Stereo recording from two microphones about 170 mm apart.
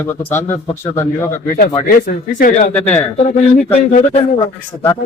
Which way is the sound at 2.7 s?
10° left (ahead or behind).